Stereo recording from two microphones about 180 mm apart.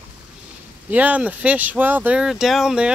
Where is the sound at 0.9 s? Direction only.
10° right (ahead or behind).